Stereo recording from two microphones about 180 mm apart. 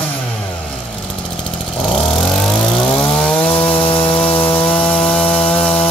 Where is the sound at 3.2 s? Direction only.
10° left (ahead or behind).